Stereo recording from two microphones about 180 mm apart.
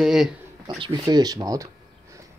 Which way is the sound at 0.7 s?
25° right (ahead or behind).